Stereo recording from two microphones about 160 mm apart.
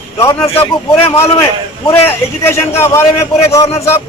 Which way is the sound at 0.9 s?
35° left (ahead or behind).